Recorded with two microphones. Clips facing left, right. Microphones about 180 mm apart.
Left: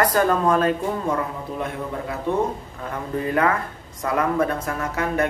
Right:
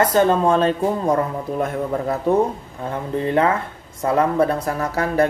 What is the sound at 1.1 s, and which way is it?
Speech, 40° right (ahead or behind).